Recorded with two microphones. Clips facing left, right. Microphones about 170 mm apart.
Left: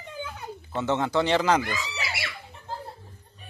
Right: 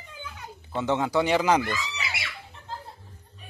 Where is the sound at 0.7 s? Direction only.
15° right (ahead or behind).